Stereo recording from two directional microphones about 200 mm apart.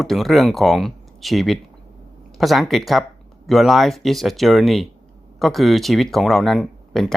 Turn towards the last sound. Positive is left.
turn(degrees=0)  # may be behind; listen again after turning